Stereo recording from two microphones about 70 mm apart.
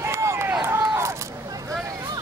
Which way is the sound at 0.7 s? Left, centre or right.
Right.